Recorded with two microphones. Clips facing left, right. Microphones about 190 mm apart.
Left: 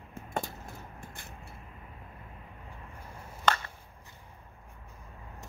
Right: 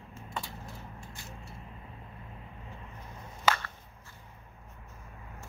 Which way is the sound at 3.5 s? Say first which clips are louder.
Even; 5° right (ahead or behind).